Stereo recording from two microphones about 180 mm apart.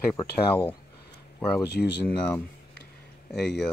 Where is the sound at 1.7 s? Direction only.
65° left (ahead or behind).